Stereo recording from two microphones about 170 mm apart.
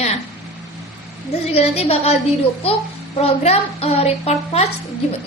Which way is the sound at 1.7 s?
40° left (ahead or behind).